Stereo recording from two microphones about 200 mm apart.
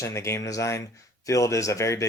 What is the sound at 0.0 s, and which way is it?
Speech, 15° left (ahead or behind).